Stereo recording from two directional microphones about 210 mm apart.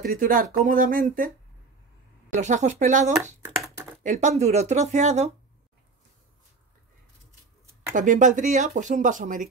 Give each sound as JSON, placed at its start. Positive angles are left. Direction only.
{"t": 0.0, "sound": "speech", "side_deg": -40}
{"t": 2.3, "sound": "speech", "side_deg": -35}
{"t": 7.9, "sound": "speech", "side_deg": -35}